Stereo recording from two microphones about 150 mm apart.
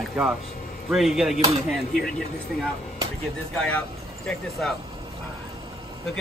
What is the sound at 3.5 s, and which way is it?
Speech, 5° left (ahead or behind).